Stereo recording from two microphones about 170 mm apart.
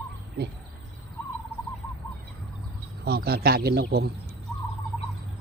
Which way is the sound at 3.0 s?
65° right (ahead or behind).